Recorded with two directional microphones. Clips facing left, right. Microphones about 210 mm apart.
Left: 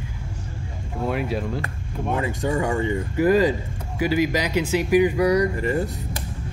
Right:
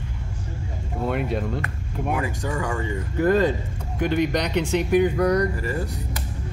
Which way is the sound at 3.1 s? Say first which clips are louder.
Left 1 dB; 10° left (ahead or behind).